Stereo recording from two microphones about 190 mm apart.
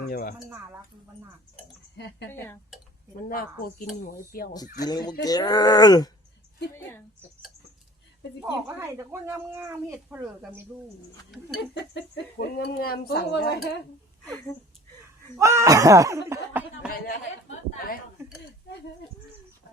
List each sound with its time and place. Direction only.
0.1 s a woman's voice: 50° left (ahead or behind)
2.3 s speech: 10° left (ahead or behind)
3.2 s a woman's voice: 50° left (ahead or behind)
4.8 s speech: 20° left (ahead or behind)
8.4 s speech: 10° right (ahead or behind)
11.7 s speech: 65° left (ahead or behind)
15.4 s speech: 15° right (ahead or behind)